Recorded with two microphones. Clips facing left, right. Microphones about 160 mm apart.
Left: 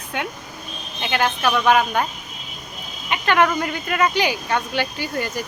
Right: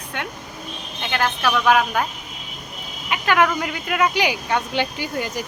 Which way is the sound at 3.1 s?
5° right (ahead or behind).